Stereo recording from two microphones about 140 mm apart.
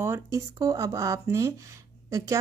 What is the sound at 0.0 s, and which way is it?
A woman's voice, 20° right (ahead or behind).